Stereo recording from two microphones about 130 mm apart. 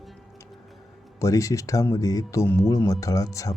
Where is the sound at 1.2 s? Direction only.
25° left (ahead or behind).